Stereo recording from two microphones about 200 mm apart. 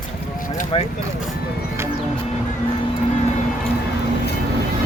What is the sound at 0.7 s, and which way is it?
Speech, 25° left (ahead or behind).